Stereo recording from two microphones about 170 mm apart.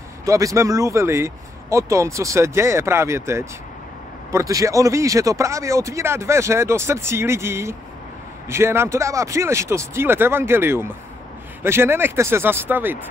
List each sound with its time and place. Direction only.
0.2 s speech: 20° right (ahead or behind)